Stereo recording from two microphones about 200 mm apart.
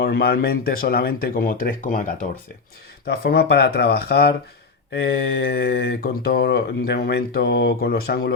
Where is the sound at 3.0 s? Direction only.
55° left (ahead or behind).